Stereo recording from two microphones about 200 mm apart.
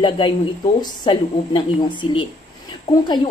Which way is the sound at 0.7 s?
20° left (ahead or behind).